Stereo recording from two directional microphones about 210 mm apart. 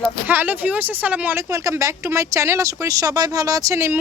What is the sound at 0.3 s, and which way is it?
Speech, 10° right (ahead or behind).